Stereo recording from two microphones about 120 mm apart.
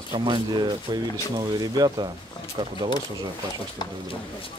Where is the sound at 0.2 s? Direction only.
40° right (ahead or behind).